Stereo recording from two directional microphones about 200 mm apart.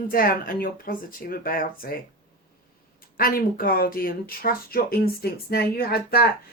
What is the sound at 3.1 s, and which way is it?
Speech, 50° left (ahead or behind).